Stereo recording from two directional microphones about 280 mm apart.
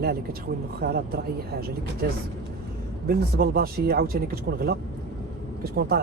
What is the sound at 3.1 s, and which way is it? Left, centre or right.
Speech, right.